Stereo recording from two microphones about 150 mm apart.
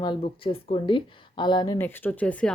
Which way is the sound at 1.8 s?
15° left (ahead or behind).